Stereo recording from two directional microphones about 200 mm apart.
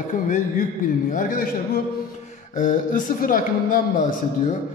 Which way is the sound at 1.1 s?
45° left (ahead or behind).